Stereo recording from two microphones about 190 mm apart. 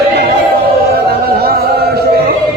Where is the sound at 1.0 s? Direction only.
55° right (ahead or behind).